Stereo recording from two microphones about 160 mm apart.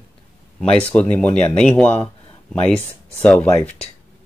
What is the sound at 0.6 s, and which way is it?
Speech, 5° left (ahead or behind).